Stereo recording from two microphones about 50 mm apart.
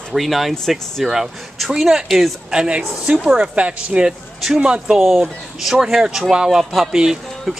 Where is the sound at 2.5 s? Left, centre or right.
Centre.